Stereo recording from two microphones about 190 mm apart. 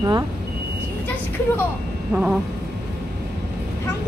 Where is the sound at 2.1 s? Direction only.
5° right (ahead or behind).